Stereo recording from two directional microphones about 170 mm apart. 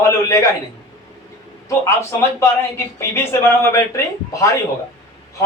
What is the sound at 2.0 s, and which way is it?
Speech, 15° left (ahead or behind).